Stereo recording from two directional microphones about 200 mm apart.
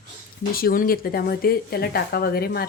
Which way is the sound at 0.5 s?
45° left (ahead or behind).